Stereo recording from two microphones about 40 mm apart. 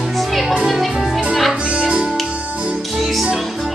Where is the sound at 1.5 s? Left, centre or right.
Right.